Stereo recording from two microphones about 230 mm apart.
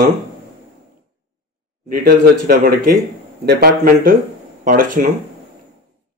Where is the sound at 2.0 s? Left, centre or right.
Right.